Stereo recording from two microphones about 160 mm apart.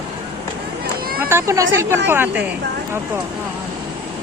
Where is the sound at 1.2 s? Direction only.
15° right (ahead or behind).